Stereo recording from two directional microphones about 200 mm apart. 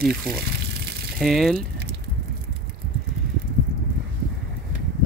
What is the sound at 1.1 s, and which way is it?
Speech, centre (ahead or behind).